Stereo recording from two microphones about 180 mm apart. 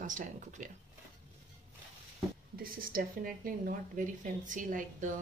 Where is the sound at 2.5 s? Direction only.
50° right (ahead or behind).